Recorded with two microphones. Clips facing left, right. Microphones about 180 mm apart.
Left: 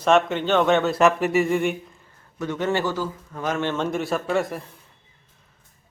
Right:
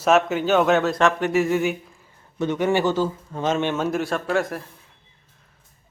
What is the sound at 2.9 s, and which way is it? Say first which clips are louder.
Speech: right 5 dB; 25° right (ahead or behind).